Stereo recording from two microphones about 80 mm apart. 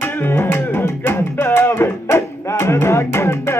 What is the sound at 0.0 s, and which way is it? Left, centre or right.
Music, left.